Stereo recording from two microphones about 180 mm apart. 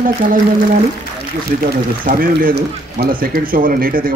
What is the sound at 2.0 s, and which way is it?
A man's voice, 50° right (ahead or behind).